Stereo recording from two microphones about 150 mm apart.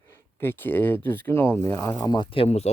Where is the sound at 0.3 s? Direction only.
15° left (ahead or behind).